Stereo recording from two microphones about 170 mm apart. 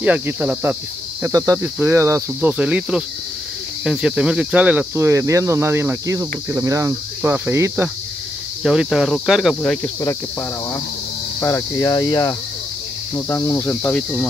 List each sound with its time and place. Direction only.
0.0 s speech: 10° right (ahead or behind)
8.6 s cricket: centre (ahead or behind)
11.4 s cricket: 15° left (ahead or behind)
13.1 s speech: 15° left (ahead or behind)